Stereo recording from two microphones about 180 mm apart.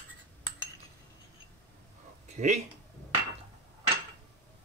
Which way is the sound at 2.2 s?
40° right (ahead or behind).